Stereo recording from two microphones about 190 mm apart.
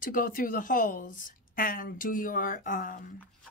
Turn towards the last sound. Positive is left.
turn(degrees=45)  # may be behind; listen again after turning